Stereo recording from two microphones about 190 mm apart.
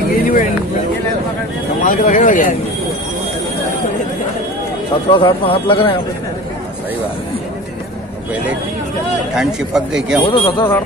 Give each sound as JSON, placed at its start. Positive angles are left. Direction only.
{"t": 0.1, "sound": "a sound", "side_deg": 50}
{"t": 1.9, "sound": "speech", "side_deg": 45}
{"t": 5.1, "sound": "speech", "side_deg": 25}
{"t": 9.3, "sound": "speech", "side_deg": 0}
{"t": 10.2, "sound": "speech", "side_deg": 25}